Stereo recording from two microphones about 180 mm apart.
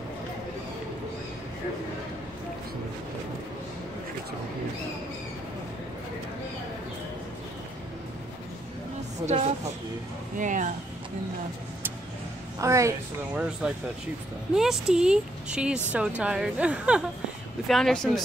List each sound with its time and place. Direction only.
9.2 s speech: 40° right (ahead or behind)
12.5 s a woman's voice: 15° right (ahead or behind)
13.4 s a woman's voice: 5° right (ahead or behind)